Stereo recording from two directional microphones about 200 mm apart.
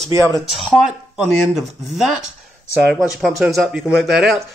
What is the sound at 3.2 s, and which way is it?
Speech, centre (ahead or behind).